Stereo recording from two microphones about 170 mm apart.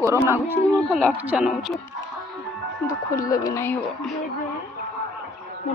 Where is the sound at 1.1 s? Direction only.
5° right (ahead or behind).